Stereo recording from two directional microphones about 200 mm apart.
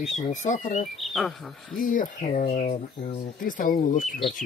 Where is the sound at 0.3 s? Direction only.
40° left (ahead or behind).